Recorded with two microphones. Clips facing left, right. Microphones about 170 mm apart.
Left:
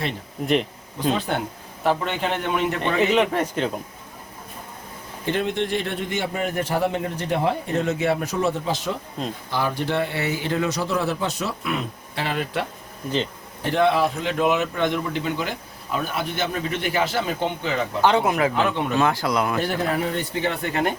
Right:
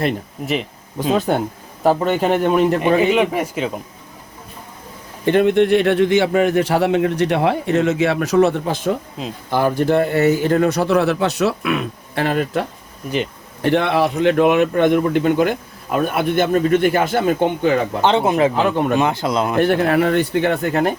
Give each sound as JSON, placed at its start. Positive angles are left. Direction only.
{"t": 1.8, "sound": "a man's voice", "side_deg": -40}
{"t": 2.8, "sound": "speech", "side_deg": -5}
{"t": 5.2, "sound": "a man's voice", "side_deg": -60}
{"t": 13.6, "sound": "a man's voice", "side_deg": -65}
{"t": 18.0, "sound": "speech", "side_deg": -25}
{"t": 19.5, "sound": "a man's voice", "side_deg": -65}
{"t": 20.6, "sound": "a man's voice", "side_deg": -40}